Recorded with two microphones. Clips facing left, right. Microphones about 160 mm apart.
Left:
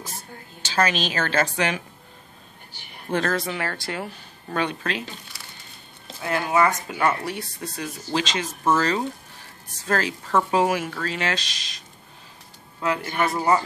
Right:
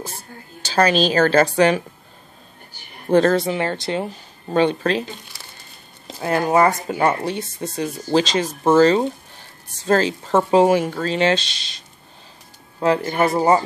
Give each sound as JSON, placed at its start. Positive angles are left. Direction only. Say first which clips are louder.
{"t": 0.6, "sound": "speech", "louder": "right 6 dB", "side_deg": -35}
{"t": 3.1, "sound": "speech", "louder": "right 9 dB", "side_deg": -30}
{"t": 6.2, "sound": "speech", "louder": "right 5 dB", "side_deg": -40}
{"t": 12.8, "sound": "speech", "louder": "right 6 dB", "side_deg": -30}